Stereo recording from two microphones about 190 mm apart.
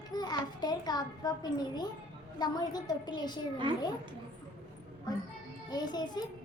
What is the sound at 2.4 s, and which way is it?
A child's voice, 20° left (ahead or behind).